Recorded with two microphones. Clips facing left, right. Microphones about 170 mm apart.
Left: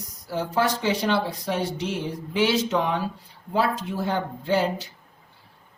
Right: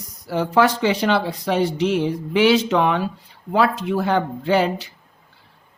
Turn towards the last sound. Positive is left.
turn(degrees=-75)  # may be behind; listen again after turning